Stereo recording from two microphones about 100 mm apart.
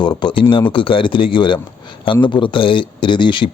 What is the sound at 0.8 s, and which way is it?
Speech, 60° left (ahead or behind).